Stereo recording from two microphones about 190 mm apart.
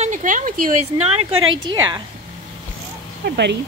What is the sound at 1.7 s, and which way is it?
Speech, 25° right (ahead or behind).